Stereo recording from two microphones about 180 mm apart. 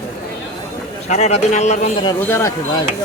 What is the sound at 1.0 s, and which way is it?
A man's voice, 40° left (ahead or behind).